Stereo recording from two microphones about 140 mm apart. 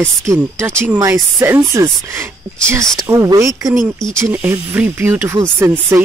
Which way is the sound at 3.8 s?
5° left (ahead or behind).